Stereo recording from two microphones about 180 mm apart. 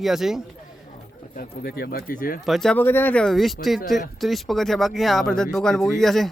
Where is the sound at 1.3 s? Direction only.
55° left (ahead or behind).